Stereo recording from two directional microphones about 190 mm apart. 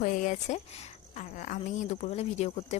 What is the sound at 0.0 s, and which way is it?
Speech, 40° left (ahead or behind).